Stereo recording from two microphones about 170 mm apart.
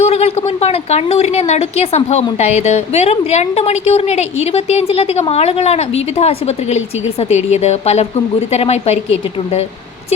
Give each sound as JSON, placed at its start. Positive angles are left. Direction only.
{"t": 0.0, "sound": "a woman's voice", "side_deg": 40}